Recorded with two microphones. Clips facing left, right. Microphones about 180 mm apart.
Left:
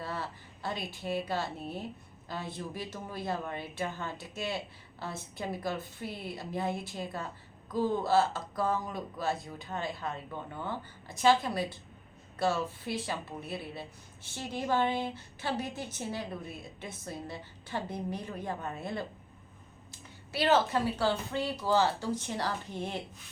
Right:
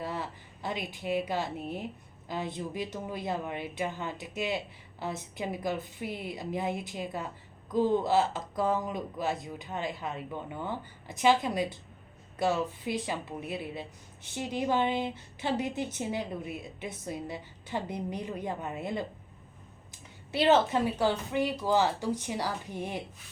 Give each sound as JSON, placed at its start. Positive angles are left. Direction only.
{"t": 0.0, "sound": "a woman's voice", "side_deg": -15}